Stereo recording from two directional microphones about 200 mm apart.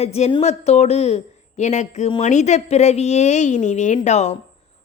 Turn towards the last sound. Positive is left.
turn(degrees=35)  # may be behind; listen again after turning